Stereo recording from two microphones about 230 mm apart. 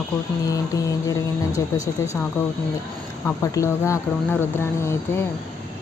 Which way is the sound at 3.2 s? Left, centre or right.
Centre.